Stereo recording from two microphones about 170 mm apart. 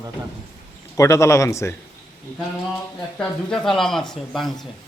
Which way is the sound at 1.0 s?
15° left (ahead or behind).